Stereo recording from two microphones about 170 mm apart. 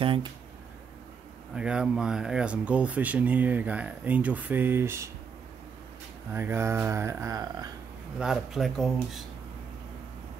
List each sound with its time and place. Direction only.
0.0 s speech: 30° right (ahead or behind)
1.5 s speech: 5° right (ahead or behind)
6.3 s speech: 15° right (ahead or behind)
8.2 s speech: centre (ahead or behind)